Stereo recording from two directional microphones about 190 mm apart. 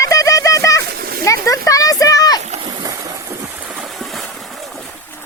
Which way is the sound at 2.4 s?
35° right (ahead or behind).